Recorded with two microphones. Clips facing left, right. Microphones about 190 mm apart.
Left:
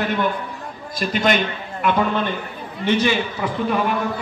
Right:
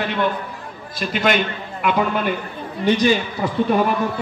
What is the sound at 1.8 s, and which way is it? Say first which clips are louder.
Speech: even; 10° right (ahead or behind).